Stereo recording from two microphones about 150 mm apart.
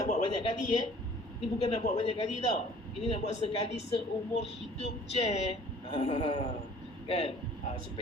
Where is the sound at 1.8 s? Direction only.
40° left (ahead or behind).